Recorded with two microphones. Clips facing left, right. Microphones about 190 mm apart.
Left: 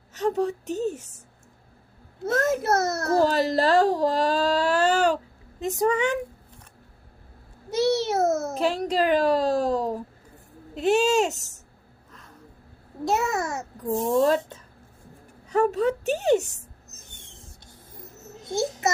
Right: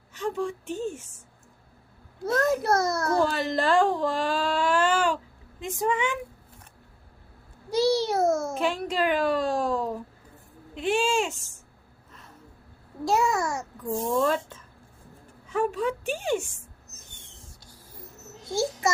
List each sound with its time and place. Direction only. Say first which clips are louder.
0.1 s a woman's voice: left 5 dB; 40° left (ahead or behind)
2.5 s a child's voice: left 1 dB; 25° left (ahead or behind)
3.1 s speech: left 7 dB; 40° left (ahead or behind)
7.7 s a sound: even; 25° left (ahead or behind)
8.5 s a woman's voice: left 3 dB; 40° left (ahead or behind)
13.1 s a child's voice: right 1 dB; 20° left (ahead or behind)
14.2 s a woman's voice: left 4 dB; 40° left (ahead or behind)
17.3 s printer: left 1 dB; 25° left (ahead or behind)
18.4 s a child's voice: left 1 dB; 25° left (ahead or behind)